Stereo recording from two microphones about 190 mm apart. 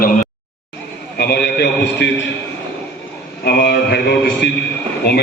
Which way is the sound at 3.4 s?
60° left (ahead or behind).